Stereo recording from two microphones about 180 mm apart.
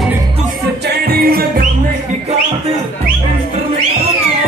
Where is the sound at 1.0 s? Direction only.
55° right (ahead or behind).